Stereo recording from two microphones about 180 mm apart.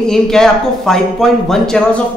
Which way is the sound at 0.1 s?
Centre (ahead or behind).